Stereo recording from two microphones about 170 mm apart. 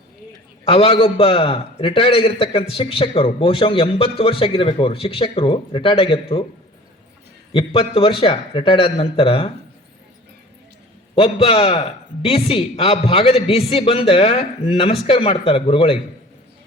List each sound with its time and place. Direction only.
0.6 s a man's voice: 35° left (ahead or behind)
7.5 s a man's voice: 35° left (ahead or behind)
11.1 s a man's voice: 35° left (ahead or behind)